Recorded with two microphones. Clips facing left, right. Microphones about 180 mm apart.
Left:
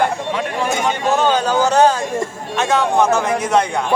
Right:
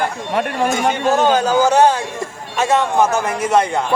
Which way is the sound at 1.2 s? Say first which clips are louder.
Right 2 dB; 10° right (ahead or behind).